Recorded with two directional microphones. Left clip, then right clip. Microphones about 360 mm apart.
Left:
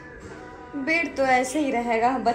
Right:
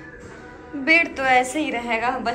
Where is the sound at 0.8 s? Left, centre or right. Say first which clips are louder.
Right 5 dB; centre.